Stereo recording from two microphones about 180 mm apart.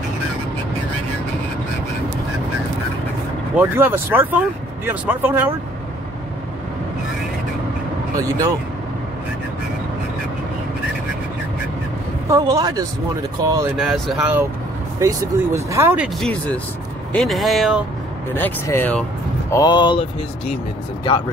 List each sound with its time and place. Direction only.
3.5 s speech: 10° right (ahead or behind)
12.3 s speech: 20° right (ahead or behind)
13.7 s speech: centre (ahead or behind)
15.0 s speech: 15° right (ahead or behind)
16.2 s speech: 5° left (ahead or behind)
18.3 s speech: 10° left (ahead or behind)
19.5 s speech: 25° left (ahead or behind)